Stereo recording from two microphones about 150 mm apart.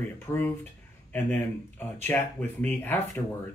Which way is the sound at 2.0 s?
10° left (ahead or behind).